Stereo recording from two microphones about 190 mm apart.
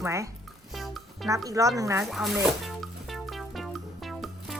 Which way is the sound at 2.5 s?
Centre (ahead or behind).